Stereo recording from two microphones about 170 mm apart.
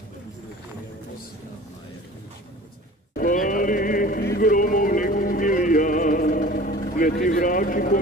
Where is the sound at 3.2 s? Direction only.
50° left (ahead or behind).